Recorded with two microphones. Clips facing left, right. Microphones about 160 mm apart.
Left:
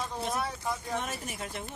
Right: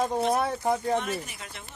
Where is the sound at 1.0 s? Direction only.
45° left (ahead or behind).